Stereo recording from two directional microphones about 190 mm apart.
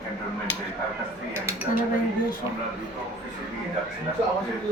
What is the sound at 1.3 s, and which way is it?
Speech, 10° right (ahead or behind).